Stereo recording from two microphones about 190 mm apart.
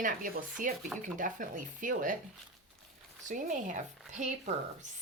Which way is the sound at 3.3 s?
40° right (ahead or behind).